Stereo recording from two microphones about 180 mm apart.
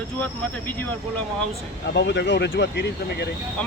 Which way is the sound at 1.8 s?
70° left (ahead or behind).